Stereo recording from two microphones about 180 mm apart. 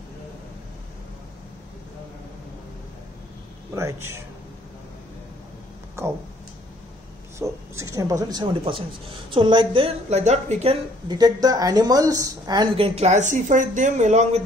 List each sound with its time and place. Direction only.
3.7 s speech: 15° right (ahead or behind)
7.3 s speech: 15° right (ahead or behind); by 10.8 s 35° right (ahead or behind)
11.1 s speech: 20° right (ahead or behind); by 14.4 s 40° right (ahead or behind)